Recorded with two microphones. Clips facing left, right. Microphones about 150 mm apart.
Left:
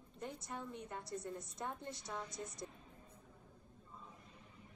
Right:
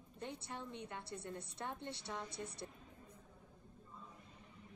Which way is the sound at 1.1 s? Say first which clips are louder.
Left 4 dB; 65° right (ahead or behind).